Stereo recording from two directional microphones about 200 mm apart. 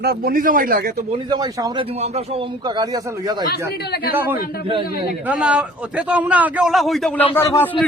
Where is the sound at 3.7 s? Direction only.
55° left (ahead or behind).